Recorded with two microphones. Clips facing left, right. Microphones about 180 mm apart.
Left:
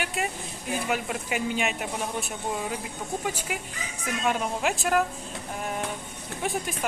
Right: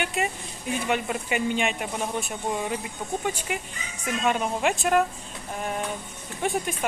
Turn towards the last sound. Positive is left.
turn(degrees=0)  # may be behind; listen again after turning